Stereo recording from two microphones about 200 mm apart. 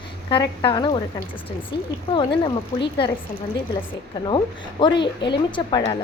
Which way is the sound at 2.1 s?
25° left (ahead or behind).